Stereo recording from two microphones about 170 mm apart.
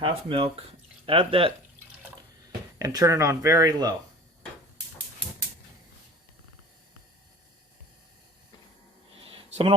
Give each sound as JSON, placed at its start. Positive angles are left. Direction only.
{"t": 0.0, "sound": "speech", "side_deg": -30}
{"t": 2.7, "sound": "speech", "side_deg": -20}
{"t": 9.2, "sound": "a sound", "side_deg": -35}